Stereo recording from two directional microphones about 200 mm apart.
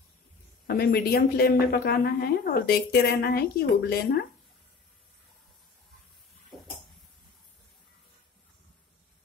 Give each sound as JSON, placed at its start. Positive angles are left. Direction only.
{"t": 0.7, "sound": "a woman's voice", "side_deg": 45}